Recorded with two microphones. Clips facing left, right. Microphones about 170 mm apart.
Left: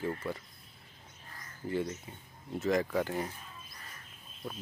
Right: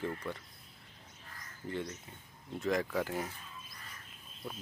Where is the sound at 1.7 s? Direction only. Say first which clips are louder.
Left 5 dB; 5° left (ahead or behind).